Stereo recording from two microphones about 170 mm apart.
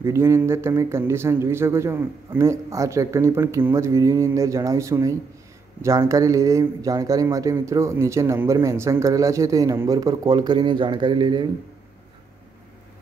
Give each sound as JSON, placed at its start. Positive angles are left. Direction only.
{"t": 0.0, "sound": "a man's voice", "side_deg": -15}